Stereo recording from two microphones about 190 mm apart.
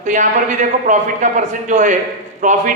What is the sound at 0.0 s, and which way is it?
A man's voice, 40° right (ahead or behind).